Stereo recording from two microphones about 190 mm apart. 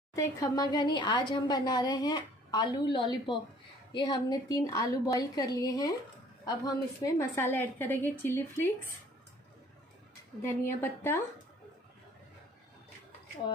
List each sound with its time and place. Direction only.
0.1 s a woman's voice: 20° left (ahead or behind)
10.4 s a woman's voice: 10° left (ahead or behind)